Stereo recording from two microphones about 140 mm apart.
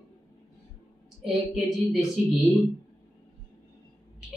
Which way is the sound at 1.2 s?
Centre (ahead or behind).